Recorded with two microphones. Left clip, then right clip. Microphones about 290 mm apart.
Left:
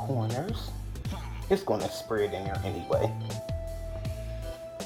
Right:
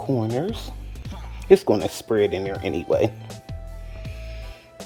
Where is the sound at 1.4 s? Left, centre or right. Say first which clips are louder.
Right 11 dB; right.